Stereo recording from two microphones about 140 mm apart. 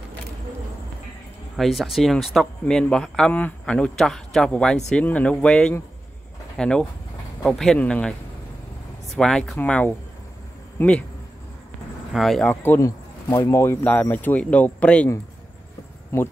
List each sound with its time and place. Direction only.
1.6 s a man's voice: centre (ahead or behind)
9.1 s a man's voice: 5° left (ahead or behind)
12.1 s a man's voice: centre (ahead or behind)
16.1 s speech: 25° left (ahead or behind)